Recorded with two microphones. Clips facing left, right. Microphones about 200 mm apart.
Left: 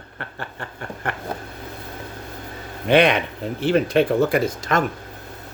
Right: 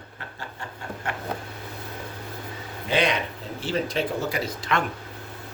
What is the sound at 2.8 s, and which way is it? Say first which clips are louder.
Speech: left 8 dB; 60° left (ahead or behind).